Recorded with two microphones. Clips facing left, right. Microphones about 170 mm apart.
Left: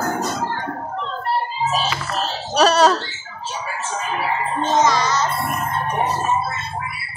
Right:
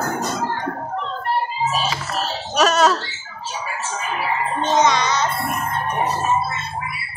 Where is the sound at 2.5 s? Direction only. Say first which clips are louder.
Left 2 dB; 35° left (ahead or behind).